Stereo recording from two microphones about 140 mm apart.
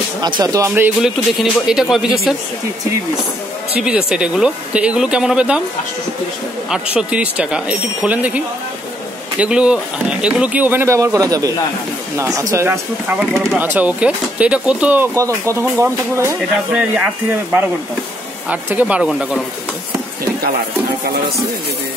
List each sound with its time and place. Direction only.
0.4 s speech: 25° right (ahead or behind)
1.0 s speech: 5° right (ahead or behind)
3.8 s speech: 5° right (ahead or behind)
6.7 s speech: 5° right (ahead or behind)
9.4 s speech: 10° right (ahead or behind)
15.1 s speech: 20° right (ahead or behind)